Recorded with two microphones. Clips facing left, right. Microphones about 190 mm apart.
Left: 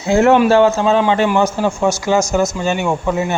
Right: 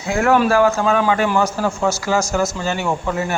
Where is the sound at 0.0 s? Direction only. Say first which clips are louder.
Left 5 dB; 25° left (ahead or behind).